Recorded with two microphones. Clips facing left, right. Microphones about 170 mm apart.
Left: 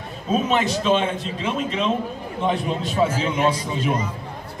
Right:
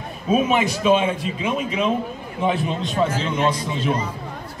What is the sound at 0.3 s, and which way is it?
A man's voice, 10° right (ahead or behind).